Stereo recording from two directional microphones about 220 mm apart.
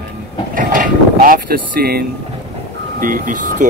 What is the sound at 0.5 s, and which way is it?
Speech, 40° right (ahead or behind).